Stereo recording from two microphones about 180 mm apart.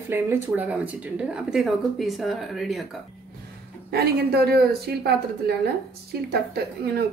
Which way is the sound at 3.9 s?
60° right (ahead or behind).